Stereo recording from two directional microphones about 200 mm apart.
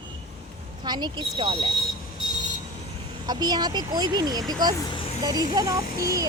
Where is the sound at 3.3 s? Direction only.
20° right (ahead or behind).